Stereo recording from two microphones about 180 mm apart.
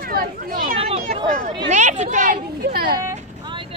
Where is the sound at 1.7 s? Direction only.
40° right (ahead or behind).